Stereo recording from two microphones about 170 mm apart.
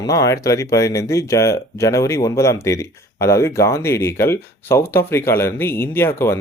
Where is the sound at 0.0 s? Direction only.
20° left (ahead or behind).